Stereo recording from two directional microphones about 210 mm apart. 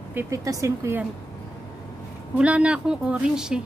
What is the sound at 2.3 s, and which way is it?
A woman's voice, 5° right (ahead or behind).